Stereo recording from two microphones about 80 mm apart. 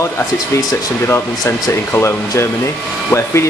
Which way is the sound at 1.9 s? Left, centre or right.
Left.